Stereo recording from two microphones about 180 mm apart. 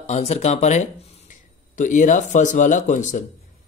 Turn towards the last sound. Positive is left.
turn(degrees=45)  # may be behind; listen again after turning